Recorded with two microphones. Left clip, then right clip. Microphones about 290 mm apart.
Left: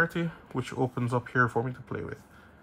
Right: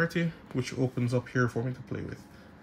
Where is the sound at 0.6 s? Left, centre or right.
Centre.